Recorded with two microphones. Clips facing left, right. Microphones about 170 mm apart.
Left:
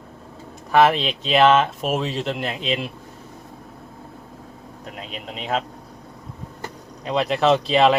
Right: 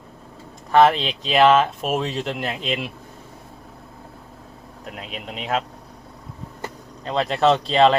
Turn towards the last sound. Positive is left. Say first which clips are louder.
# even
turn(degrees=5)  # may be behind; listen again after turning